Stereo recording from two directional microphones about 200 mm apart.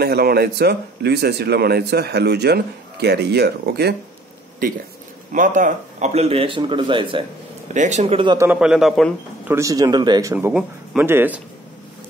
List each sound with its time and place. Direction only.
0.0 s a man's voice: 50° right (ahead or behind)
4.6 s a man's voice: 45° right (ahead or behind); by 7.2 s 25° right (ahead or behind)
7.7 s speech: 35° right (ahead or behind)
8.5 s a man's voice: 5° right (ahead or behind)
9.5 s speech: 15° right (ahead or behind)